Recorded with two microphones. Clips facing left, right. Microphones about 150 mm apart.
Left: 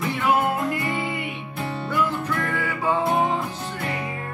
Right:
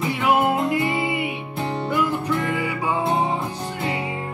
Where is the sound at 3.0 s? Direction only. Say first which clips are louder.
Even; 25° right (ahead or behind).